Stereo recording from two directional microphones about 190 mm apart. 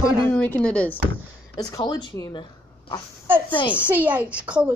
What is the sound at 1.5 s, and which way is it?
A woman's voice, 20° left (ahead or behind).